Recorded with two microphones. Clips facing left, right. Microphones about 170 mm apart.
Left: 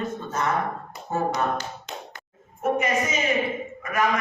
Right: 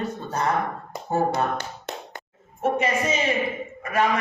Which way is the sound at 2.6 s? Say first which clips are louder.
Right 1 dB; 30° right (ahead or behind).